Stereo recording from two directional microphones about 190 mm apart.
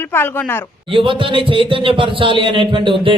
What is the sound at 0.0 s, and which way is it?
Speech, 10° left (ahead or behind).